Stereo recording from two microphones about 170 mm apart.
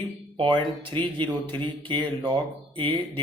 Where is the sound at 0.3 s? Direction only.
30° right (ahead or behind).